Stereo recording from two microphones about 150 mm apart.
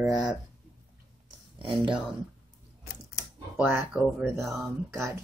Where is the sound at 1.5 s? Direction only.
35° right (ahead or behind).